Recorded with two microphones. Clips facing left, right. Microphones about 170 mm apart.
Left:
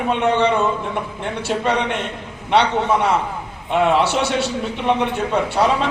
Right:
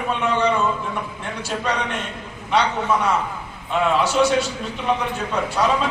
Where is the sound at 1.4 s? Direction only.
70° left (ahead or behind).